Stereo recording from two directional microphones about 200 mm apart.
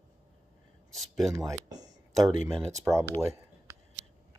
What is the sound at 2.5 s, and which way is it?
Speech, 5° left (ahead or behind).